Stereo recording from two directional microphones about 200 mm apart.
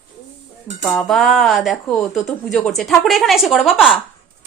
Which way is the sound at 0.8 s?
Centre (ahead or behind).